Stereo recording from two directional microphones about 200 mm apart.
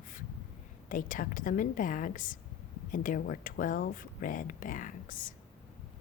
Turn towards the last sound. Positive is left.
turn(degrees=40)  # may be behind; listen again after turning